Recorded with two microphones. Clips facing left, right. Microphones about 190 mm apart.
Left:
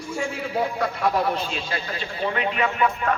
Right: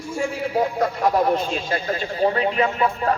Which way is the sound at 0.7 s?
45° right (ahead or behind).